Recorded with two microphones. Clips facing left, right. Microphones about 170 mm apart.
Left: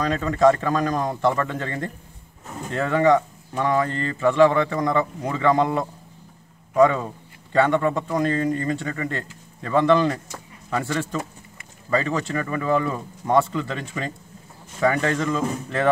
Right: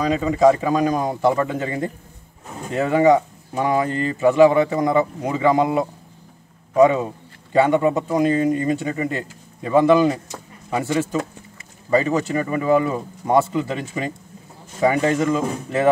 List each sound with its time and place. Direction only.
0.0 s speech: 5° right (ahead or behind)